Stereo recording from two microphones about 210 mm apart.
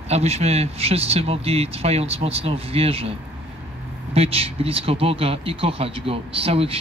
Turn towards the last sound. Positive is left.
turn(degrees=-25)  # may be behind; listen again after turning